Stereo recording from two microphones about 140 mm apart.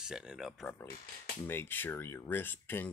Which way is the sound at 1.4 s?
15° left (ahead or behind).